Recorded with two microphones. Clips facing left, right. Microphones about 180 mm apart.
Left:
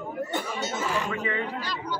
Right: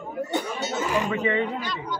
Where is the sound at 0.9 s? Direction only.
20° right (ahead or behind).